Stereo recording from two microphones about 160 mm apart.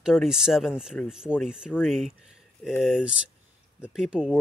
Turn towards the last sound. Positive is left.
turn(degrees=-5)  # may be behind; listen again after turning